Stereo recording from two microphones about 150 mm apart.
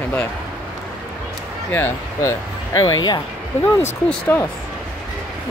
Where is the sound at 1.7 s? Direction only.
15° left (ahead or behind).